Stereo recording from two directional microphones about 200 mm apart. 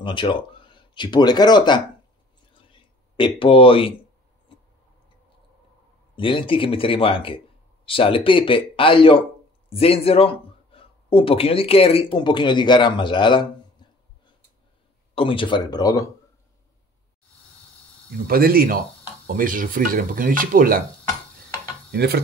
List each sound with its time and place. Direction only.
0.0 s speech: 25° left (ahead or behind)
2.7 s a sound: 25° left (ahead or behind)
6.1 s speech: 25° left (ahead or behind)
18.2 s speech: 45° right (ahead or behind)
21.9 s speech: 55° right (ahead or behind)